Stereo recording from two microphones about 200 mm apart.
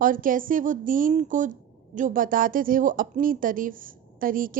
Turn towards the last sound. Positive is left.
turn(degrees=-45)  # may be behind; listen again after turning